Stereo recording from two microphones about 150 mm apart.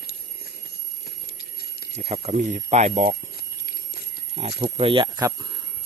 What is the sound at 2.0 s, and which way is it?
Speech, 45° right (ahead or behind).